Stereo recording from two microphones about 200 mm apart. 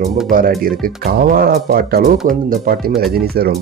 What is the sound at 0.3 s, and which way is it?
Speech, 45° right (ahead or behind).